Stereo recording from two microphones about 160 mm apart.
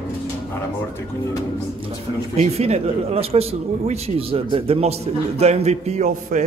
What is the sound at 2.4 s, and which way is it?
Speech, 40° right (ahead or behind).